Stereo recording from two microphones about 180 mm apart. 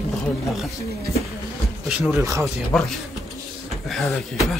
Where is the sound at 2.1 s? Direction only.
15° right (ahead or behind).